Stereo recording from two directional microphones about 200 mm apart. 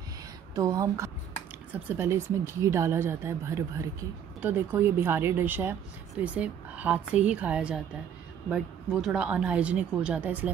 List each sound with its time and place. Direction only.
0.6 s a woman's voice: 15° right (ahead or behind)